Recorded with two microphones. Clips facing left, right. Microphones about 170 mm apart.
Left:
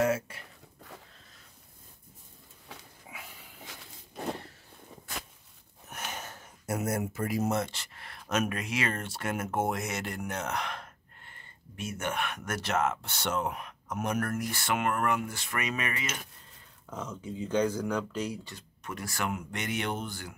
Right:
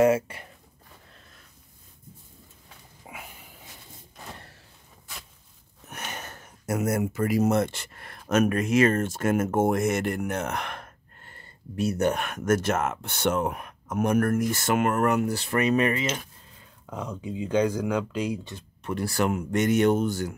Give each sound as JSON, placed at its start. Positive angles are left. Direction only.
{"t": 0.0, "sound": "speech", "side_deg": -70}
{"t": 3.1, "sound": "a sound", "side_deg": -55}
{"t": 5.9, "sound": "speech", "side_deg": -70}
{"t": 11.3, "sound": "speech", "side_deg": -40}
{"t": 17.2, "sound": "speech", "side_deg": -15}
{"t": 18.9, "sound": "speech", "side_deg": -35}